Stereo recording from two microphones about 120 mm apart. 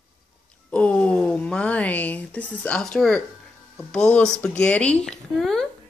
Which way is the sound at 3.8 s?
10° left (ahead or behind).